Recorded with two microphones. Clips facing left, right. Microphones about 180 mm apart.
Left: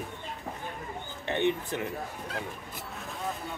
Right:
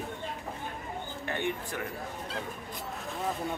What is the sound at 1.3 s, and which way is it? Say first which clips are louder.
Speech: left 6 dB; 20° left (ahead or behind).